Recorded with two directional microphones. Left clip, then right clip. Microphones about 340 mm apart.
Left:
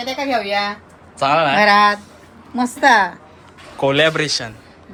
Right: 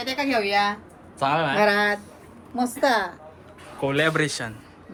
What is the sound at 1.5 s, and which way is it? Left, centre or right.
Speech, left.